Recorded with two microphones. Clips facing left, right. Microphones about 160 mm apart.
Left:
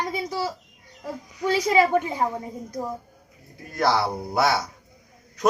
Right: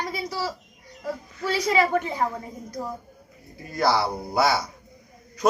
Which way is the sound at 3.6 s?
Centre (ahead or behind).